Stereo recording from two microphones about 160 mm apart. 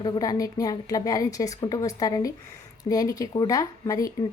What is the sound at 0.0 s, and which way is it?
A woman's voice, 25° left (ahead or behind).